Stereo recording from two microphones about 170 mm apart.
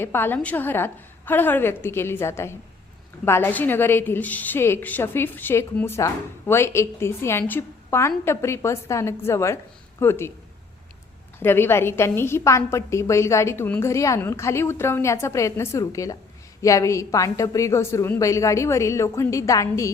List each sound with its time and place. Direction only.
0.0 s a woman's voice: 15° left (ahead or behind)
11.3 s a woman's voice: 15° left (ahead or behind)